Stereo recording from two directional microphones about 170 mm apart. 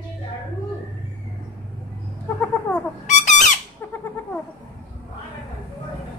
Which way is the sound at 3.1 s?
45° left (ahead or behind).